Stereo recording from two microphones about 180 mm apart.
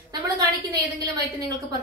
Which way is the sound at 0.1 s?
20° right (ahead or behind).